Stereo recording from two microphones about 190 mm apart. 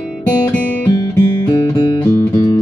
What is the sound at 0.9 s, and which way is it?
Music, 20° left (ahead or behind).